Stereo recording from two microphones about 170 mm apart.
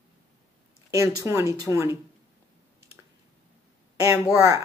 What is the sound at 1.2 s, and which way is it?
Speech, 15° right (ahead or behind).